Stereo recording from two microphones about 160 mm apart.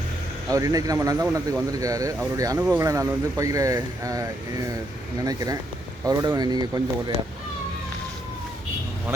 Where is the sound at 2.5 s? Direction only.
5° right (ahead or behind).